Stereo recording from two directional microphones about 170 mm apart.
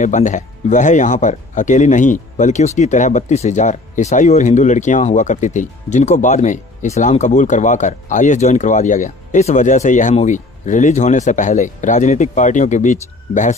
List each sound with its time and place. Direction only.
0.0 s speech: 45° left (ahead or behind)